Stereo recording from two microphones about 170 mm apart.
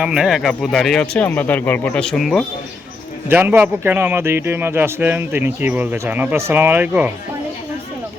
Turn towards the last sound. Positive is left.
turn(degrees=-10)  # may be behind; listen again after turning